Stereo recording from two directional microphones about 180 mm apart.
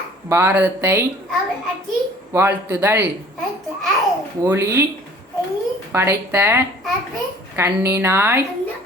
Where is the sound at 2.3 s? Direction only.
15° right (ahead or behind).